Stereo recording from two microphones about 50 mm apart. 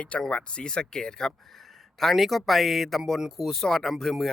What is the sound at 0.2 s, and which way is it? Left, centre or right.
Speech, left.